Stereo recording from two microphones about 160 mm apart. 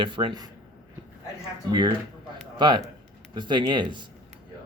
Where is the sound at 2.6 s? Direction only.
30° right (ahead or behind).